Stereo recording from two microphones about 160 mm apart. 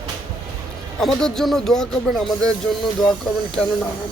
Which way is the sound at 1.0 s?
5° left (ahead or behind).